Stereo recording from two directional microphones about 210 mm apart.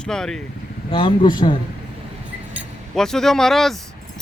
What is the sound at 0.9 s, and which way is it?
Speech, 25° left (ahead or behind).